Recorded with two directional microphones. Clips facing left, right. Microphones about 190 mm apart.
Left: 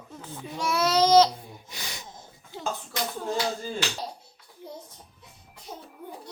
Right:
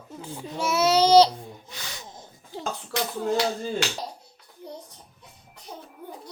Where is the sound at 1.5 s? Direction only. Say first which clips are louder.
Even; 15° left (ahead or behind).